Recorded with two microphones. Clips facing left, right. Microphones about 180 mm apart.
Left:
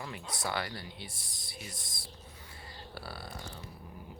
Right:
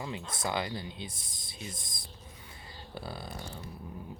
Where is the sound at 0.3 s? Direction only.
20° right (ahead or behind).